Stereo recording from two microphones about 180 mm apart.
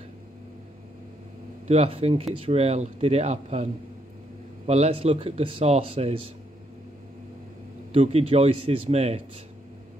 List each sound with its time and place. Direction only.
1.7 s speech: 35° right (ahead or behind)
4.6 s speech: 35° right (ahead or behind)
7.9 s speech: 35° right (ahead or behind)